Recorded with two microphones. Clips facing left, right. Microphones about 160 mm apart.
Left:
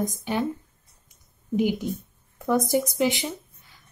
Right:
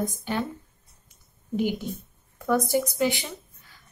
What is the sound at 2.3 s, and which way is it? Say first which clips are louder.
Speech: left 1 dB; 20° left (ahead or behind).